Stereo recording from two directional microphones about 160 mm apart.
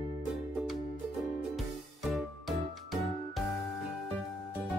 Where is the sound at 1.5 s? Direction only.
Centre (ahead or behind).